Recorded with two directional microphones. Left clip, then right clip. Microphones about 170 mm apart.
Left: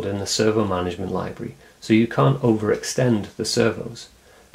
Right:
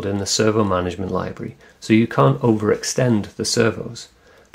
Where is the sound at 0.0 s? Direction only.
20° right (ahead or behind).